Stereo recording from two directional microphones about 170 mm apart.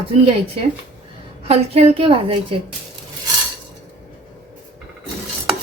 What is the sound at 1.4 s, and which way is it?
A woman's voice, 35° right (ahead or behind).